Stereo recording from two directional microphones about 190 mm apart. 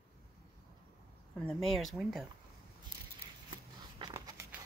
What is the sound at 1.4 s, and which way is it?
Speech, centre (ahead or behind).